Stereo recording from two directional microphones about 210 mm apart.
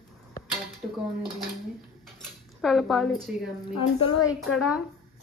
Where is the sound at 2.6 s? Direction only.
Centre (ahead or behind).